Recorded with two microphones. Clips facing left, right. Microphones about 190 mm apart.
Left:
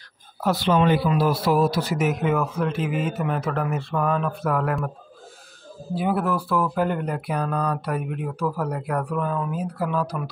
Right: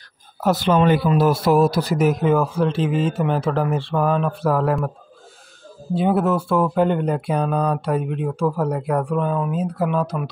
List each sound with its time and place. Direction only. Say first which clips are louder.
0.4 s speech: right 3 dB; 45° right (ahead or behind); by 4.7 s 30° right (ahead or behind)
5.9 s speech: right 5 dB; 25° right (ahead or behind)